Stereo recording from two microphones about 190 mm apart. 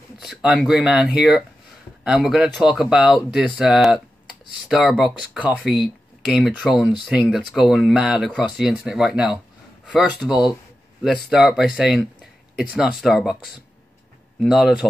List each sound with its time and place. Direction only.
0.2 s speech: 5° right (ahead or behind)
14.4 s speech: centre (ahead or behind)